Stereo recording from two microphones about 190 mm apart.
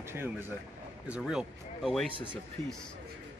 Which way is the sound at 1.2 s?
Centre (ahead or behind).